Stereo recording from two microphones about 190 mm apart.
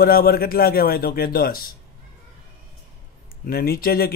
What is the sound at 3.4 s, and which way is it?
Speech, 55° left (ahead or behind).